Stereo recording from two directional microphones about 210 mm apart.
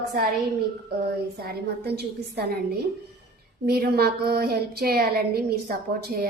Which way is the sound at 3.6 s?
50° right (ahead or behind).